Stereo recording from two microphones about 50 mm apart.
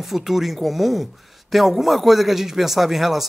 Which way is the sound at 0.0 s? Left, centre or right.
Centre.